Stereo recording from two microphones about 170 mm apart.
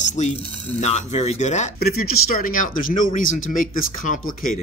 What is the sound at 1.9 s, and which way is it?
Speech, 60° left (ahead or behind).